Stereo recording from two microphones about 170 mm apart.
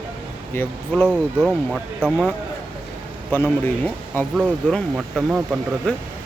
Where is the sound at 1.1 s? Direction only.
5° right (ahead or behind).